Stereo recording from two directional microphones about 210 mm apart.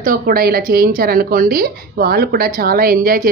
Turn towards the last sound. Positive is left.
turn(degrees=-45)  # may be behind; listen again after turning